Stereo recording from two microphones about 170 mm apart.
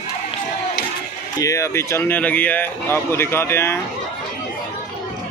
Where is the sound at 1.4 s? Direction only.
20° left (ahead or behind).